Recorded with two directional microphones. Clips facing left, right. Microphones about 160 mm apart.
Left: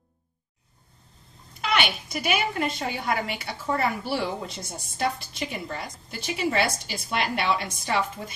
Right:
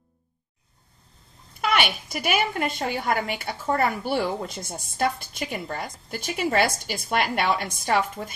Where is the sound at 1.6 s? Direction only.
50° right (ahead or behind).